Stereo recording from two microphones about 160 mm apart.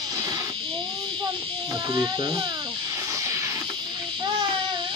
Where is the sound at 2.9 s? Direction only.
20° right (ahead or behind).